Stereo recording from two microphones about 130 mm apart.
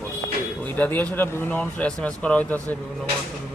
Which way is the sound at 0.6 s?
15° left (ahead or behind).